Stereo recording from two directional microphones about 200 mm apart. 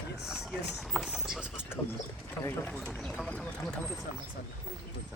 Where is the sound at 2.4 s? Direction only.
10° left (ahead or behind).